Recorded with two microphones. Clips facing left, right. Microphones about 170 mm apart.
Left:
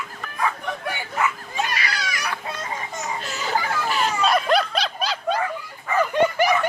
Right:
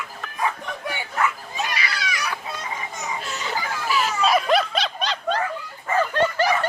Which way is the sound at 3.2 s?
Centre (ahead or behind).